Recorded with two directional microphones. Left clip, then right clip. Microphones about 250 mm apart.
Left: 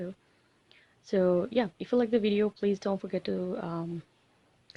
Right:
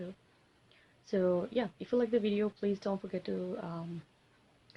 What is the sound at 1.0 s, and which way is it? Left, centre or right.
Speech, left.